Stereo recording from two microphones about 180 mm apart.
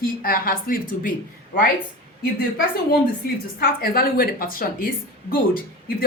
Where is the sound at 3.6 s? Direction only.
55° left (ahead or behind).